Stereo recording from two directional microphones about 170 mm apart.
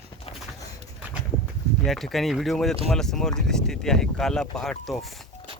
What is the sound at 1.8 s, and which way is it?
Speech, centre (ahead or behind).